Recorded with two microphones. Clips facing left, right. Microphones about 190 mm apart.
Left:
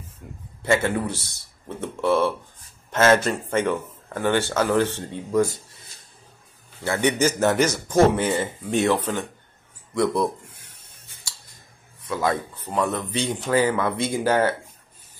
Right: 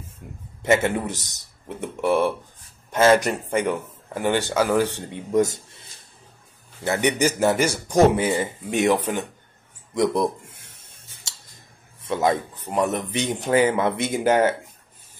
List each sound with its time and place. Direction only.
0.6 s speech: 20° right (ahead or behind)
6.8 s speech: 15° right (ahead or behind)
9.9 s a sound: 15° right (ahead or behind)
12.0 s speech: 25° right (ahead or behind)